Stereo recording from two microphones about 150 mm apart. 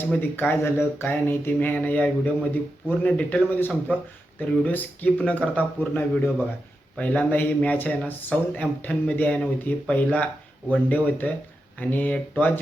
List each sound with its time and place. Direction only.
0.0 s speech: 15° left (ahead or behind)